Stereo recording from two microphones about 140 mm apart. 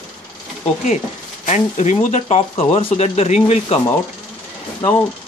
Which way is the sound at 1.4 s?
55° left (ahead or behind).